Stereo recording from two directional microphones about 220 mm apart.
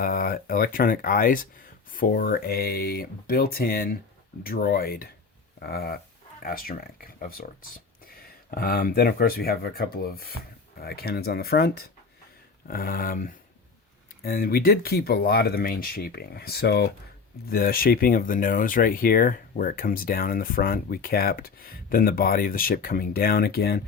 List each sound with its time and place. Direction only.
0.0 s speech: 40° left (ahead or behind)